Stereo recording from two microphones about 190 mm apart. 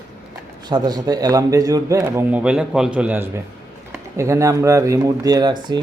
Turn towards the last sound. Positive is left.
turn(degrees=-25)  # may be behind; listen again after turning